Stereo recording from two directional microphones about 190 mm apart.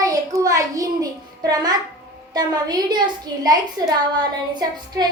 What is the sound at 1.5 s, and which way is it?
A child's voice, 20° right (ahead or behind).